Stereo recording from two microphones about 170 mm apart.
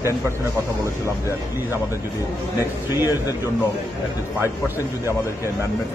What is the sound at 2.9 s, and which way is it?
Speech, 15° right (ahead or behind).